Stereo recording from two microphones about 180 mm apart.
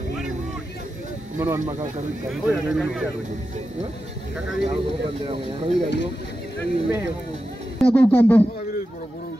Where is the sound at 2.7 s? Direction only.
Centre (ahead or behind).